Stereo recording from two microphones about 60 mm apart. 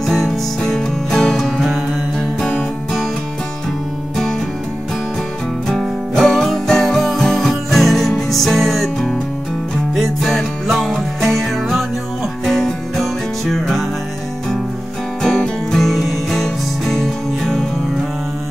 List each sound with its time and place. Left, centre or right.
0.0 s music: centre
5.7 s music: centre
15.2 s music: centre